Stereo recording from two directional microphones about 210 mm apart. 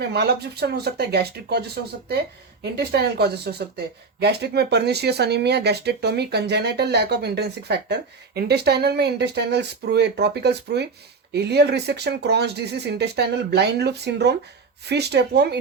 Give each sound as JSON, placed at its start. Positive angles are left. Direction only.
{"t": 0.1, "sound": "speech", "side_deg": -50}